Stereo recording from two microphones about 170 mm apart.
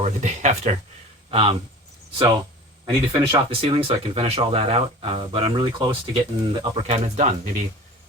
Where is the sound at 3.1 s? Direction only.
30° right (ahead or behind).